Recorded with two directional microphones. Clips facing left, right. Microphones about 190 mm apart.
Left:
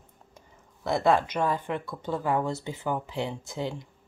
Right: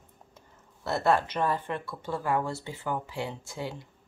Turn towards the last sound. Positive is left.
turn(degrees=20)  # may be behind; listen again after turning